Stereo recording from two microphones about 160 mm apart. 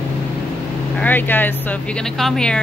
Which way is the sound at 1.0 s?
10° left (ahead or behind).